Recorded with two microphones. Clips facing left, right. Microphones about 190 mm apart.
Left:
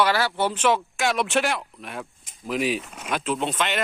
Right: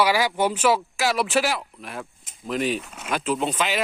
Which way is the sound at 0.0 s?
10° right (ahead or behind).